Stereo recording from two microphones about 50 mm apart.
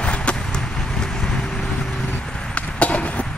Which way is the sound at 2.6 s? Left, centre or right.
Left.